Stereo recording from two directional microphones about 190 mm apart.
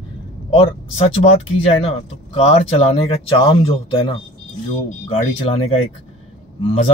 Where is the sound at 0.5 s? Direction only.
35° left (ahead or behind).